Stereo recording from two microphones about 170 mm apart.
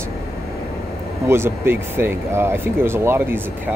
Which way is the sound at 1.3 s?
15° right (ahead or behind).